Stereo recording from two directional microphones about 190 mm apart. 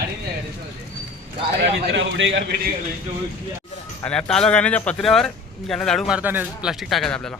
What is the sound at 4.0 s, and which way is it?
Speech, 5° left (ahead or behind).